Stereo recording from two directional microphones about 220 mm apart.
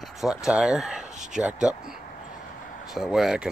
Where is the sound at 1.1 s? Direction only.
35° right (ahead or behind).